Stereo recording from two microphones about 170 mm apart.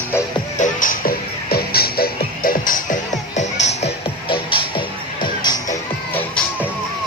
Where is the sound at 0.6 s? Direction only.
50° left (ahead or behind); by 4.6 s 35° left (ahead or behind).